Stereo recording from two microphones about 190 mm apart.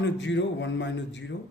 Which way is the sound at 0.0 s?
70° left (ahead or behind).